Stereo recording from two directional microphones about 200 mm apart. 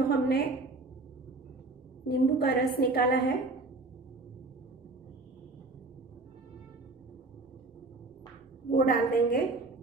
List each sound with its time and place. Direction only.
0.1 s a woman's voice: 50° left (ahead or behind)
2.0 s a woman's voice: 50° left (ahead or behind)
8.7 s a woman's voice: 45° left (ahead or behind)